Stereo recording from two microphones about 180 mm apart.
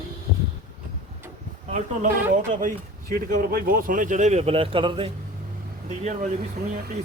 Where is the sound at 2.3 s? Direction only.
45° right (ahead or behind); by 5.0 s 30° right (ahead or behind).